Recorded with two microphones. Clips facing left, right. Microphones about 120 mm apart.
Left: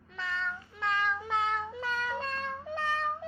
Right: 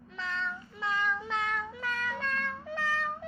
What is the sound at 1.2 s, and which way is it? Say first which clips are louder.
Cat: left 2 dB; 15° left (ahead or behind).